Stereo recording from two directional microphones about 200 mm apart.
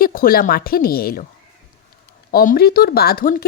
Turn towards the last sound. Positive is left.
turn(degrees=45)  # may be behind; listen again after turning